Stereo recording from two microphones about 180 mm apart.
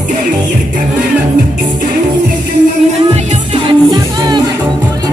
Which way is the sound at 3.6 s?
25° right (ahead or behind).